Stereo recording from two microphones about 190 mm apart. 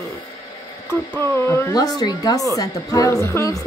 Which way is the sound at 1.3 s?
10° left (ahead or behind).